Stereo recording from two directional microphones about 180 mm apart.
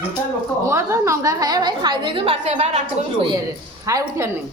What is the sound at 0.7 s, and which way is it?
A woman's voice, 15° right (ahead or behind).